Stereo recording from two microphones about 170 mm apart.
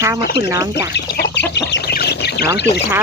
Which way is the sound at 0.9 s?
85° left.